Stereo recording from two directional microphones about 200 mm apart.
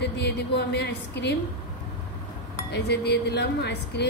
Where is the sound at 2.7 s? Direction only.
55° left (ahead or behind).